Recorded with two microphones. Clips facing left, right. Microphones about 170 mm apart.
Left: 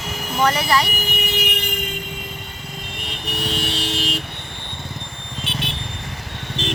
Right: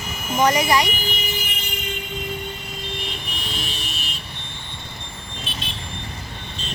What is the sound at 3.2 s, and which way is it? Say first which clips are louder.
Vehicle: left 7 dB; 70° left (ahead or behind).